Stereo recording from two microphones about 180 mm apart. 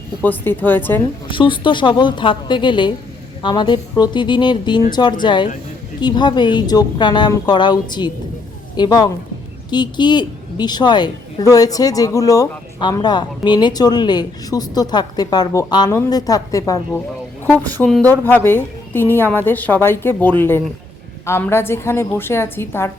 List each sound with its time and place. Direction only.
0.2 s a woman's voice: 10° left (ahead or behind)
1.3 s a woman's voice: 30° left (ahead or behind)